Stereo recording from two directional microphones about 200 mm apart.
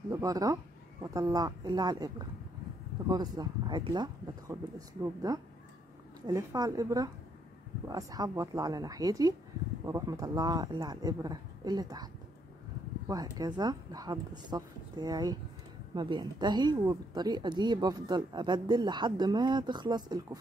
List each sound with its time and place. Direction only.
0.1 s speech: 15° right (ahead or behind)
13.1 s speech: 20° right (ahead or behind)